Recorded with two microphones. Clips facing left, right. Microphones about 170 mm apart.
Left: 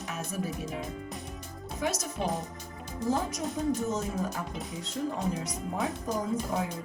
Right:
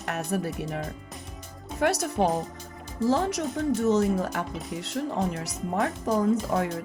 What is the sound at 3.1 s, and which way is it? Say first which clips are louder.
Speech: right 5 dB; 85° right.